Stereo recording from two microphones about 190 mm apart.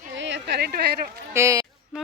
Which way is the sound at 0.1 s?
70° right (ahead or behind).